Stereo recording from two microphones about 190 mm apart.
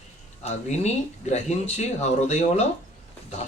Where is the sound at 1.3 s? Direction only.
35° left (ahead or behind).